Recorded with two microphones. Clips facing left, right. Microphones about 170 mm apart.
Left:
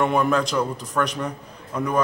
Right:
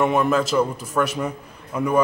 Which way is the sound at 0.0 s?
5° right (ahead or behind).